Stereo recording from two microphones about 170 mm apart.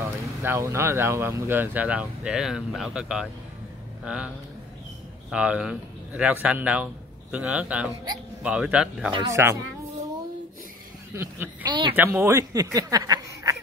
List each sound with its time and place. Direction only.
0.0 s speech: 15° right (ahead or behind)
5.3 s a man's voice: 5° right (ahead or behind)
9.1 s speech: 20° right (ahead or behind)
11.1 s speech: 15° right (ahead or behind)